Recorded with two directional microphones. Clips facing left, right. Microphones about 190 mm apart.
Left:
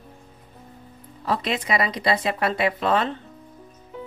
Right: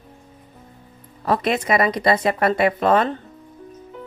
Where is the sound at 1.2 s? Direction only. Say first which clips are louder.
Right 5 dB; 50° right (ahead or behind).